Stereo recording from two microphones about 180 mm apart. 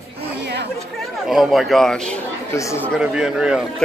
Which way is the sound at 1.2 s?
Centre (ahead or behind).